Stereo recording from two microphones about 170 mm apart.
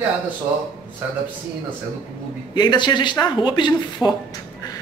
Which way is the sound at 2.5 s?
25° left (ahead or behind).